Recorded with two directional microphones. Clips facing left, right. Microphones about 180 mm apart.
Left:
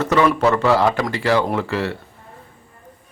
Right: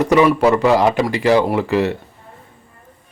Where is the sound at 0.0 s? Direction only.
15° right (ahead or behind).